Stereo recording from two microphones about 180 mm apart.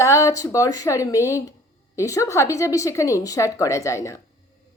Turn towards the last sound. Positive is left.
turn(degrees=15)  # may be behind; listen again after turning